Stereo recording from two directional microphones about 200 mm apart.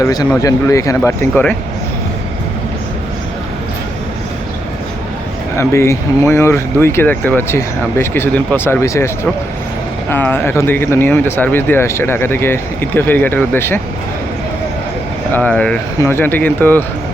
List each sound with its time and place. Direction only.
0.0 s speech: 20° left (ahead or behind)
5.5 s speech: 15° left (ahead or behind)
10.1 s speech: 10° left (ahead or behind)
15.3 s speech: 5° left (ahead or behind)